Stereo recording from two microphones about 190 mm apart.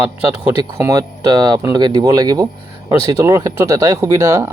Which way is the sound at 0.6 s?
20° right (ahead or behind).